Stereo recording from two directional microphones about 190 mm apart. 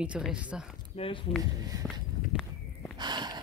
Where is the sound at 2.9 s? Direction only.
25° right (ahead or behind).